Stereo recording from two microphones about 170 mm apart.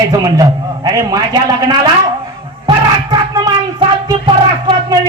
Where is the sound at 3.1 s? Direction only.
25° right (ahead or behind).